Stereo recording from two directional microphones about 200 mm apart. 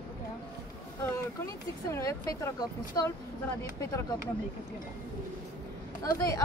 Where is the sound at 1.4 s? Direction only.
15° left (ahead or behind).